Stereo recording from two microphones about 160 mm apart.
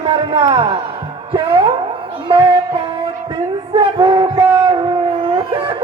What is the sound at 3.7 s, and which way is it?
Music, 35° right (ahead or behind).